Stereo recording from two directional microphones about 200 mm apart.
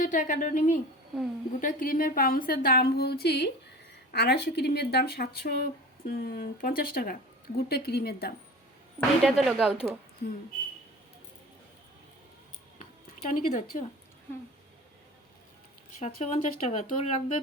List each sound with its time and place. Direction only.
0.0 s speech: 40° left (ahead or behind)
9.0 s speech: centre (ahead or behind)
13.3 s speech: 40° left (ahead or behind)
16.0 s speech: 35° left (ahead or behind)